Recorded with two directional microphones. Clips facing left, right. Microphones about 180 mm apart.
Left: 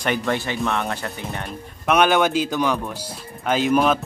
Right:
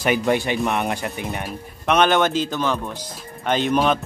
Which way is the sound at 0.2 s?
15° right (ahead or behind).